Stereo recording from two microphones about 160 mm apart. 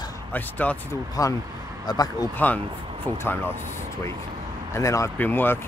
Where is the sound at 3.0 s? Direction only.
10° left (ahead or behind).